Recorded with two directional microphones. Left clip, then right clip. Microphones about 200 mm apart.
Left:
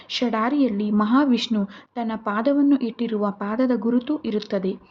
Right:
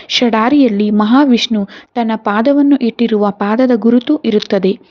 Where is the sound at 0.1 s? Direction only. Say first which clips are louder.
Right 11 dB; 40° right (ahead or behind).